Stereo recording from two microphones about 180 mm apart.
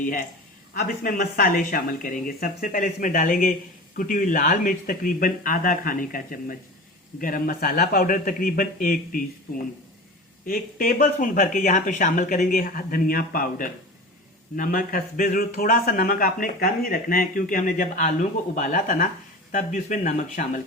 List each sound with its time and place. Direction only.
0.7 s speech: 55° left (ahead or behind)
10.4 s speech: 50° left (ahead or behind)